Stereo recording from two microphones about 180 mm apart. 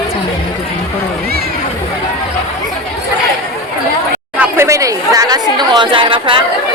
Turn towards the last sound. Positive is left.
turn(degrees=-30)  # may be behind; listen again after turning